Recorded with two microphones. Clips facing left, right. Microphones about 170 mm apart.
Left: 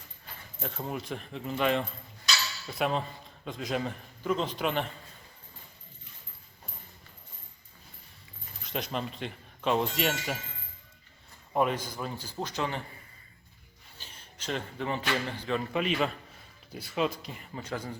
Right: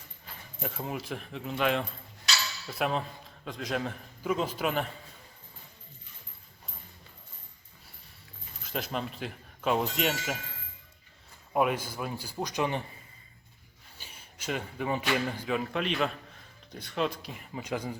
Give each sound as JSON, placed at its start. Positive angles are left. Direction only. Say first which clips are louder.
{"t": 0.6, "sound": "a man's voice", "louder": "even", "side_deg": -5}
{"t": 8.6, "sound": "a man's voice", "louder": "even", "side_deg": 0}
{"t": 11.5, "sound": "a man's voice", "louder": "right 1 dB", "side_deg": -10}
{"t": 14.0, "sound": "a man's voice", "louder": "right 1 dB", "side_deg": -10}
{"t": 17.6, "sound": "a man's voice", "louder": "right 3 dB", "side_deg": -15}